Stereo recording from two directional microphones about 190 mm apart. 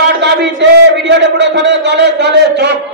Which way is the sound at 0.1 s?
65° right (ahead or behind).